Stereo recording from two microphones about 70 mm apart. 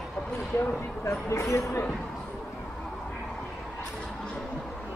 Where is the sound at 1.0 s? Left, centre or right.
Left.